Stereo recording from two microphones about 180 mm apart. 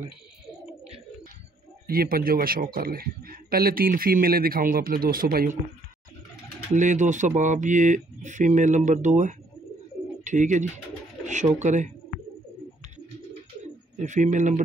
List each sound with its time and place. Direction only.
1.9 s a man's voice: 55° right (ahead or behind)
6.7 s a man's voice: 45° right (ahead or behind)
11.6 s speech: 40° right (ahead or behind)
14.0 s a man's voice: 40° right (ahead or behind)